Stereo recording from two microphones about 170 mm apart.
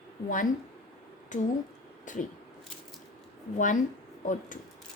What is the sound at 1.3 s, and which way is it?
Speech, 50° left (ahead or behind).